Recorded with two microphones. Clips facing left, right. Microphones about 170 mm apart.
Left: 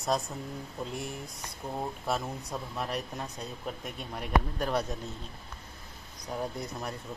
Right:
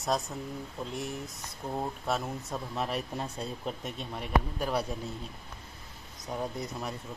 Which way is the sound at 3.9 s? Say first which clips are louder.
Left 1 dB; centre (ahead or behind).